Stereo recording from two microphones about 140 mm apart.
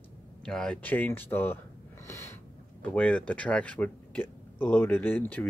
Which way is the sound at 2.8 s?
10° left (ahead or behind).